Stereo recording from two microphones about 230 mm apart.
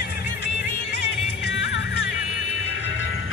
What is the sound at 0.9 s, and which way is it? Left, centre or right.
Music, left.